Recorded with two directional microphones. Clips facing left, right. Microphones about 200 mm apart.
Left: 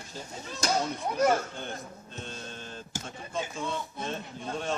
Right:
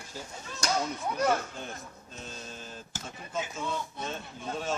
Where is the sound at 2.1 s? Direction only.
5° right (ahead or behind).